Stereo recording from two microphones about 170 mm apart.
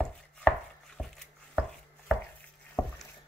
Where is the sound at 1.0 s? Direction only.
5° right (ahead or behind).